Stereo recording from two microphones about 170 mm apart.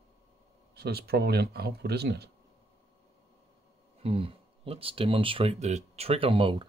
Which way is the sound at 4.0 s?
35° right (ahead or behind).